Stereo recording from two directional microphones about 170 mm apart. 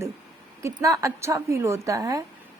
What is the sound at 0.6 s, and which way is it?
A woman's voice, 20° right (ahead or behind).